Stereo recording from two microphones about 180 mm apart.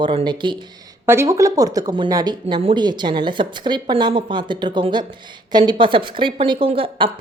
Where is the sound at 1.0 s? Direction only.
15° right (ahead or behind).